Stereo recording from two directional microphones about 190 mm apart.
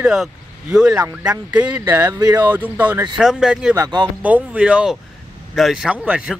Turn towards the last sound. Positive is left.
turn(degrees=-5)  # may be behind; listen again after turning